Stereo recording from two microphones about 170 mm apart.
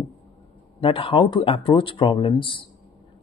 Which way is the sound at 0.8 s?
30° left (ahead or behind).